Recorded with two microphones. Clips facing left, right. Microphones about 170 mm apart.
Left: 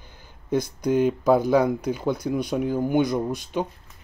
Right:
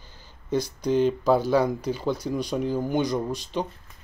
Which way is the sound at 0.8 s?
10° left (ahead or behind).